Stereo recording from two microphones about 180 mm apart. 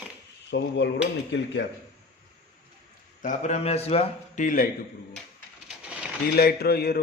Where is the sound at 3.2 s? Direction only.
45° left (ahead or behind).